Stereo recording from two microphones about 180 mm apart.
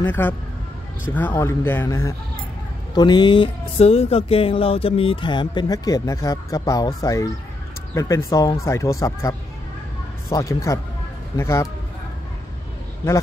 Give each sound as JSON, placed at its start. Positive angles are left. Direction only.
{"t": 0.0, "sound": "speech", "side_deg": 10}
{"t": 10.3, "sound": "speech", "side_deg": 15}